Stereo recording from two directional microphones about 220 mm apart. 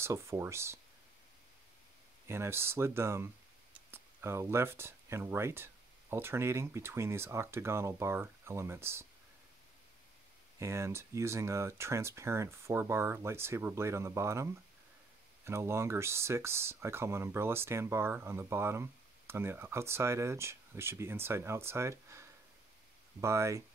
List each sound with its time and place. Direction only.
0.0 s speech: 10° right (ahead or behind)
2.2 s speech: 10° right (ahead or behind)
10.6 s speech: 10° right (ahead or behind)
23.2 s speech: 15° right (ahead or behind)